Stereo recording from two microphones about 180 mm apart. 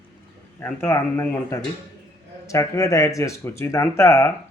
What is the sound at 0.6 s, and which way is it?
Speech, 10° left (ahead or behind).